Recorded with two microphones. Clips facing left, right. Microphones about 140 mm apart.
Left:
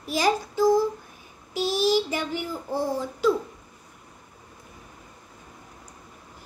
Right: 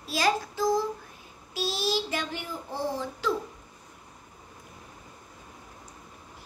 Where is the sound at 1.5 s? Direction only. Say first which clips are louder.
Left 7 dB; 15° left (ahead or behind).